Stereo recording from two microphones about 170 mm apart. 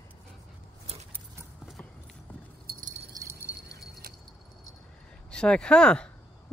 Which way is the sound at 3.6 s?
65° right (ahead or behind).